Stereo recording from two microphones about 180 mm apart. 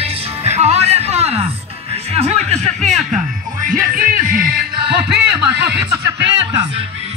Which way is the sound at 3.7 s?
50° right (ahead or behind).